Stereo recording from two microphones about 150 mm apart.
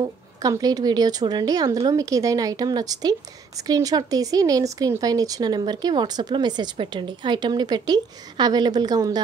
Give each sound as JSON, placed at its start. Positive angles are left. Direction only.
{"t": 0.0, "sound": "speech", "side_deg": -25}